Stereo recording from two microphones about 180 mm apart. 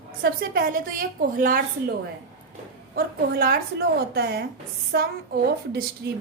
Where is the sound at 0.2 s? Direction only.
55° right (ahead or behind).